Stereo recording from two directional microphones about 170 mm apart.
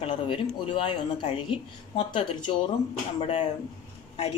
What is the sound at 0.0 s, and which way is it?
A woman's voice, 30° left (ahead or behind).